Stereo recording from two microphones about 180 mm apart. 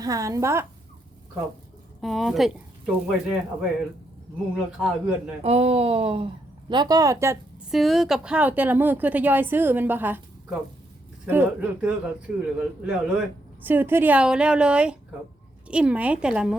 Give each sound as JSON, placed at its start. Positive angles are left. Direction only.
{"t": 0.0, "sound": "a woman's voice", "side_deg": -20}
{"t": 2.0, "sound": "speech", "side_deg": 0}
{"t": 5.4, "sound": "speech", "side_deg": -35}
{"t": 7.7, "sound": "a woman's voice", "side_deg": 0}